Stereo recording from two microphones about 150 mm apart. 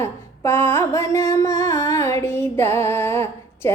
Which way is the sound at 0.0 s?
15° left (ahead or behind).